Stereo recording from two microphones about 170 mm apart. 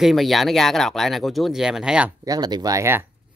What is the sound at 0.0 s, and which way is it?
Speech, centre (ahead or behind).